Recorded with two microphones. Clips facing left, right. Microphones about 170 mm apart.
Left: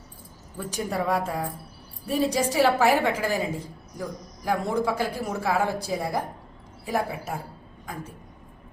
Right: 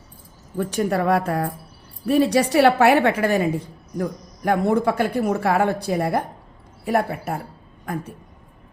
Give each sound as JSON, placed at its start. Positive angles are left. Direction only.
{"t": 0.5, "sound": "a woman's voice", "side_deg": -60}